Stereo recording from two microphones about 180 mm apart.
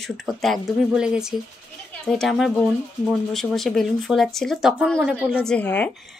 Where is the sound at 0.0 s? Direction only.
Centre (ahead or behind).